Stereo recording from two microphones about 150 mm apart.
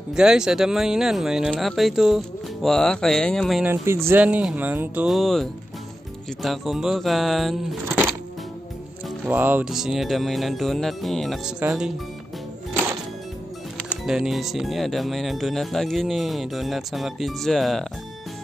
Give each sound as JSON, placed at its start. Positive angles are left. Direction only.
{"t": 0.1, "sound": "speech", "side_deg": -5}
{"t": 3.6, "sound": "speech", "side_deg": -15}
{"t": 5.1, "sound": "speech", "side_deg": 0}
{"t": 9.2, "sound": "speech", "side_deg": -10}
{"t": 13.8, "sound": "speech", "side_deg": -5}